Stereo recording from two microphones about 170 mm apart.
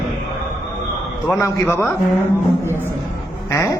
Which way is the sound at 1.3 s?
15° left (ahead or behind).